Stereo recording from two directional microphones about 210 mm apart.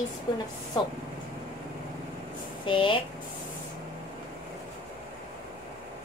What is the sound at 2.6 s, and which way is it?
Speech, 25° left (ahead or behind).